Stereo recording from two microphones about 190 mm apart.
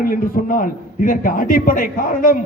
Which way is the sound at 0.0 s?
50° left (ahead or behind).